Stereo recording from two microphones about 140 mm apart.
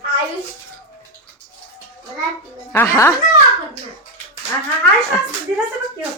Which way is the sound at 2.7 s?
15° left (ahead or behind).